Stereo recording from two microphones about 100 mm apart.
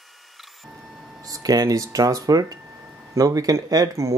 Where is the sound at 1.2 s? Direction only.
35° right (ahead or behind).